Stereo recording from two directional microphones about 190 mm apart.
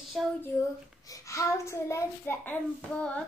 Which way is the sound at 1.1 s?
15° left (ahead or behind).